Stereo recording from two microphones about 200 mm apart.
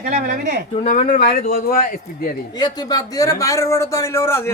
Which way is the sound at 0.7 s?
35° left (ahead or behind).